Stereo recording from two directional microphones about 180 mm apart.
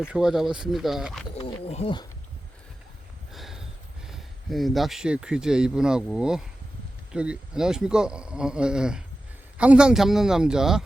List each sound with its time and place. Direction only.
0.0 s speech: 5° right (ahead or behind)
1.4 s speech: 35° left (ahead or behind)
3.3 s a sound: centre (ahead or behind)
4.0 s speech: centre (ahead or behind)